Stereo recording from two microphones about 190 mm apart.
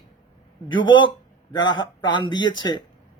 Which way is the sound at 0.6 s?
90° left.